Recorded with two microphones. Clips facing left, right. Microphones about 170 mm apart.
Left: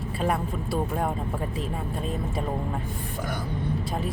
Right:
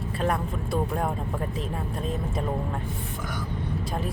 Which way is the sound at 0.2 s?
Centre (ahead or behind).